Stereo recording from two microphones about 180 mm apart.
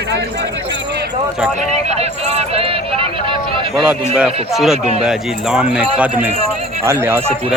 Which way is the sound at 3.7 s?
5° right (ahead or behind).